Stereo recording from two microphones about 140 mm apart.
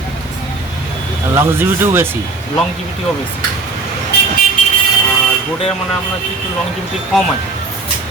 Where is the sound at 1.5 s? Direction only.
15° right (ahead or behind).